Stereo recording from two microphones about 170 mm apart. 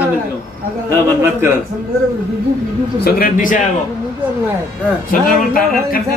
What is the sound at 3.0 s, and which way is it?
Speech, 60° left (ahead or behind).